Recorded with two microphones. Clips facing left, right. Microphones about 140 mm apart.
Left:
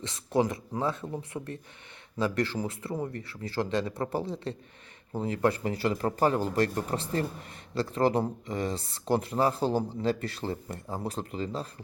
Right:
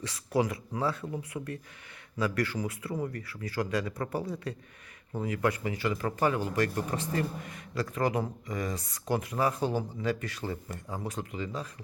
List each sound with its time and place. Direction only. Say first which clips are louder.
0.0 s speech: left 2 dB; 25° left (ahead or behind)